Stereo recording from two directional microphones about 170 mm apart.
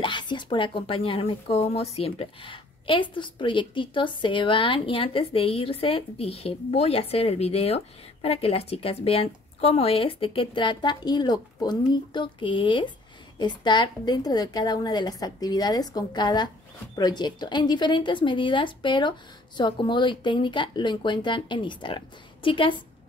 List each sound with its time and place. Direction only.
0.0 s a woman's voice: 25° left (ahead or behind)